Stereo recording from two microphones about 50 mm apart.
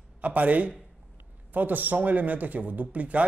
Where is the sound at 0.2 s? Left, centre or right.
Right.